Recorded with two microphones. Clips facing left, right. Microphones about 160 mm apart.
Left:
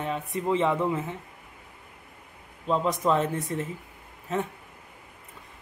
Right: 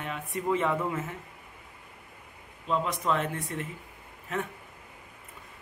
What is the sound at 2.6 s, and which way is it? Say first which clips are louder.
Speech: left 4 dB; 35° left (ahead or behind).